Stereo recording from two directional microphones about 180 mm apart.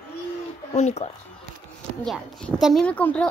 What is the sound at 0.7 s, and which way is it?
Speech, 40° left (ahead or behind).